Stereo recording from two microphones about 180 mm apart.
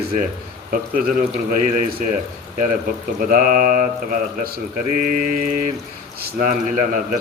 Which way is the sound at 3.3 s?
50° right (ahead or behind).